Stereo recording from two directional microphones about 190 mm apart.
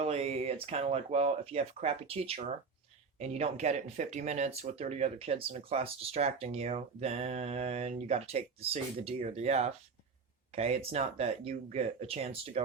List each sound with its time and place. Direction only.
0.0 s speech: 35° right (ahead or behind)